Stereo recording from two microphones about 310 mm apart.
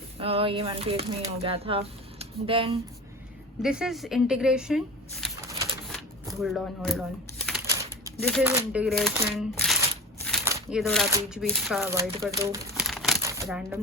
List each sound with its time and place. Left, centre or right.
0.2 s speech: centre
3.6 s speech: centre
5.9 s shuffling cards: centre
8.2 s speech: centre
10.2 s a sound: centre
10.5 s speech: centre
11.9 s speech: centre
12.8 s crumpling: centre
13.2 s shuffling cards: centre